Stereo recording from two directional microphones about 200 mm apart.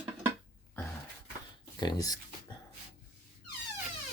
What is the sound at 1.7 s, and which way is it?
Speech, 20° left (ahead or behind).